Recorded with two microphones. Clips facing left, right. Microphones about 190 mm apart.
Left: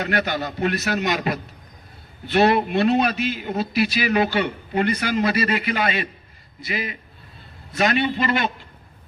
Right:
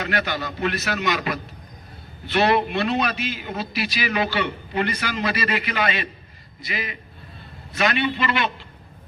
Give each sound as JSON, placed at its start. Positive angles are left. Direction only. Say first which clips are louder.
{"t": 0.0, "sound": "a man's voice", "louder": "left 2 dB", "side_deg": 40}
{"t": 7.8, "sound": "a man's voice", "louder": "left 2 dB", "side_deg": 40}